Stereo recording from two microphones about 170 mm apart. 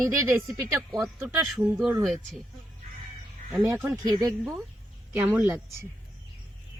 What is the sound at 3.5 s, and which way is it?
Speech, 15° right (ahead or behind).